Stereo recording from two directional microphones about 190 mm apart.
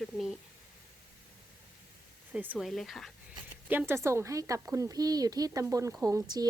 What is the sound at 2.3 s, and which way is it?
Speech, 5° right (ahead or behind).